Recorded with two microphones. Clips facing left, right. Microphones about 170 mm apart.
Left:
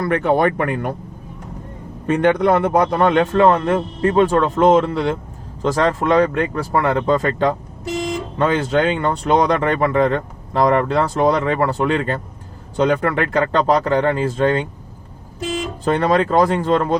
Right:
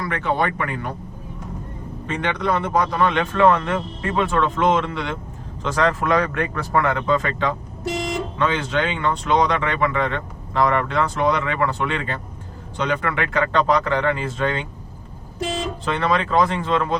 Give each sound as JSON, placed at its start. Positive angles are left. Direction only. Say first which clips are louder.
{"t": 0.0, "sound": "speech", "louder": "left 6 dB", "side_deg": 50}
{"t": 2.0, "sound": "speech", "louder": "left 8 dB", "side_deg": 50}
{"t": 15.8, "sound": "speech", "louder": "left 7 dB", "side_deg": 45}